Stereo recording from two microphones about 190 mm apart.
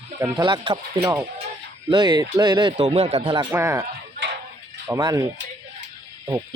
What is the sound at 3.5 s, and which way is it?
Speech, 15° right (ahead or behind).